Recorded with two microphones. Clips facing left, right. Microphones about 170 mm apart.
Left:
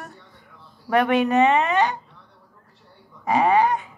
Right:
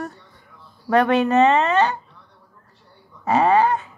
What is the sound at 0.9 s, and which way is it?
A woman's voice, 15° left (ahead or behind).